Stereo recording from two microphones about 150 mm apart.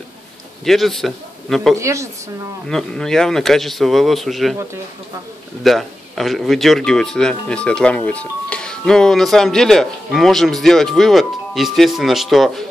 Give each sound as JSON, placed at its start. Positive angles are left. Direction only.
{"t": 0.7, "sound": "speech", "side_deg": 0}
{"t": 1.8, "sound": "speech", "side_deg": -20}
{"t": 2.7, "sound": "speech", "side_deg": 5}
{"t": 5.6, "sound": "speech", "side_deg": 0}